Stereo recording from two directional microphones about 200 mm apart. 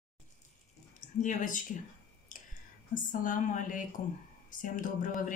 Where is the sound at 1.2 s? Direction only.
40° left (ahead or behind).